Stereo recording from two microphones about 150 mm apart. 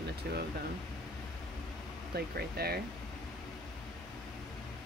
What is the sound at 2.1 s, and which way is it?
Speech, 90° right.